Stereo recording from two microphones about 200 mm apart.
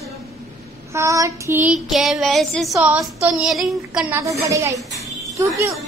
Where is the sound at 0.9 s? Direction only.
15° right (ahead or behind).